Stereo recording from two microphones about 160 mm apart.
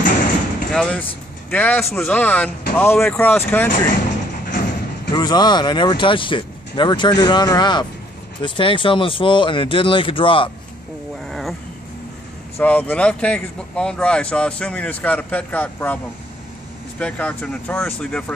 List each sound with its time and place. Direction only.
0.7 s speech: 5° left (ahead or behind)
4.5 s thump: 65° left (ahead or behind)
5.1 s speech: 25° left (ahead or behind)
11.2 s a sound: centre (ahead or behind)
12.5 s speech: 10° left (ahead or behind)
17.0 s speech: 10° left (ahead or behind)